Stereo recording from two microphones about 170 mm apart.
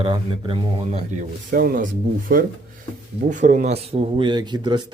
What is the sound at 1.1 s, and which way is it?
Speech, 50° right (ahead or behind).